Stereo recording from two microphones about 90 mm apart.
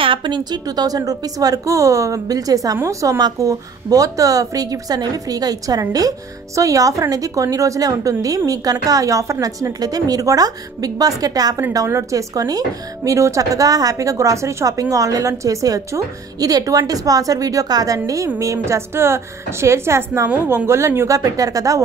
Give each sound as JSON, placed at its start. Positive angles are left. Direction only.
{"t": 0.0, "sound": "a woman's voice", "side_deg": -65}